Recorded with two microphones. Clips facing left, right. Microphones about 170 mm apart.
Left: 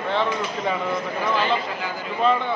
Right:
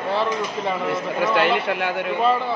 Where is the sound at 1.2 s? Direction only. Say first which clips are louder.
Right 5 dB; 80° right.